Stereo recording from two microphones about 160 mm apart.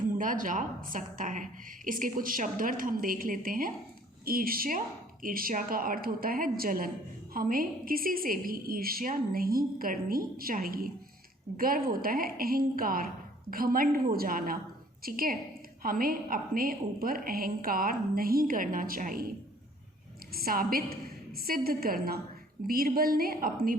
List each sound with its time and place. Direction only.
0.1 s a woman's voice: 55° right (ahead or behind)
20.3 s a woman's voice: 65° right (ahead or behind)